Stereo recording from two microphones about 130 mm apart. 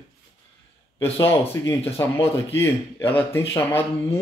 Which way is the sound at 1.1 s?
20° left (ahead or behind).